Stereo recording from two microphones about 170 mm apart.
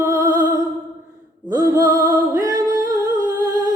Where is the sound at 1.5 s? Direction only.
20° right (ahead or behind).